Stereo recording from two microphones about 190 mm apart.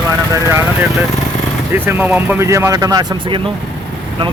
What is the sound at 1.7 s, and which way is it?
Speech, 10° right (ahead or behind).